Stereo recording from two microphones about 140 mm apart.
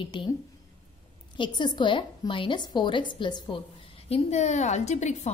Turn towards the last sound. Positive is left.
turn(degrees=55)  # may be behind; listen again after turning